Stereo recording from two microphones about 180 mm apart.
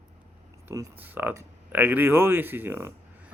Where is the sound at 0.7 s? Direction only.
10° right (ahead or behind).